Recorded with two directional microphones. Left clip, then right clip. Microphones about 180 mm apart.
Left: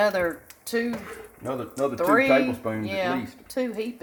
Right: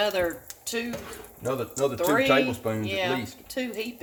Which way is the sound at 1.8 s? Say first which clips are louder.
Left 3 dB; 15° left (ahead or behind).